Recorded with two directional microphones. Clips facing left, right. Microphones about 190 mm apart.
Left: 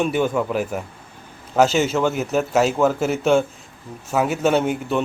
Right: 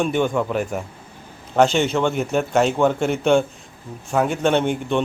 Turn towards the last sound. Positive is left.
turn(degrees=5)  # may be behind; listen again after turning